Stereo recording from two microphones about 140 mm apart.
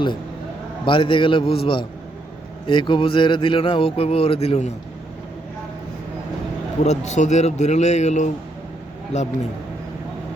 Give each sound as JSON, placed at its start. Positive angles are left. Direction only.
{"t": 0.9, "sound": "speech", "side_deg": 35}
{"t": 6.8, "sound": "a man's voice", "side_deg": 55}